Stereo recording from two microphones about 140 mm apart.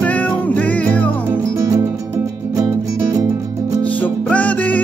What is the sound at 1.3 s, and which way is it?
Music, 20° right (ahead or behind).